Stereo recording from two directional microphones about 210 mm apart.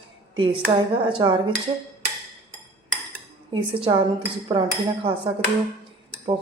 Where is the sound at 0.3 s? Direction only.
25° right (ahead or behind).